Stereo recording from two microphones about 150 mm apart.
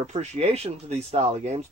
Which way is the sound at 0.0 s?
45° right (ahead or behind).